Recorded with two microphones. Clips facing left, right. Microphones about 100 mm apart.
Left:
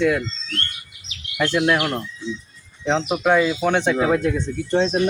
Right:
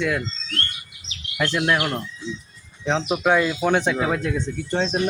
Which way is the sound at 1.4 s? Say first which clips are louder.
Left 3 dB; 5° left (ahead or behind).